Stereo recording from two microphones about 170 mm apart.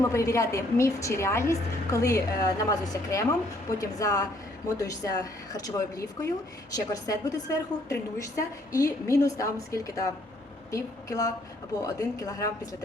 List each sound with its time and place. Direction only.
0.1 s a woman's voice: 20° left (ahead or behind)